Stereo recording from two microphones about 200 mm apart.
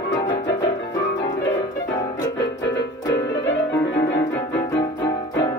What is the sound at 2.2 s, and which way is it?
Music, 65° left (ahead or behind).